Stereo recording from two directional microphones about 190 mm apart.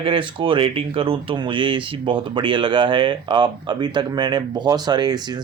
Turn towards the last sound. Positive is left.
turn(degrees=-20)  # may be behind; listen again after turning